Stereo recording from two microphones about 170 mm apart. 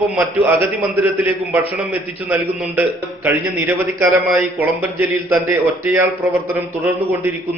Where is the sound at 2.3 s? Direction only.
10° right (ahead or behind).